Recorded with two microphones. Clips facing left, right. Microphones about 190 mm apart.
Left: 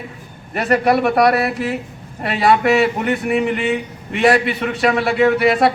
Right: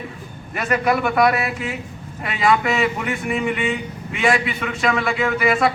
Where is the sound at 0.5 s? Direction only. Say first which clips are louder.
Left 4 dB; 35° left (ahead or behind).